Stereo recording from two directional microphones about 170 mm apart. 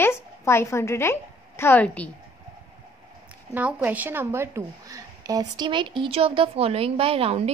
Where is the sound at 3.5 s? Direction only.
10° right (ahead or behind).